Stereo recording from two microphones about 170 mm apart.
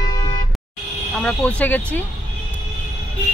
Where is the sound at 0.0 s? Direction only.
25° left (ahead or behind).